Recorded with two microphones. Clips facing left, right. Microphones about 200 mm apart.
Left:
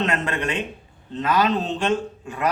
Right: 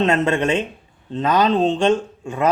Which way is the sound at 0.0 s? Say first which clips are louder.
Right 7 dB; 25° right (ahead or behind).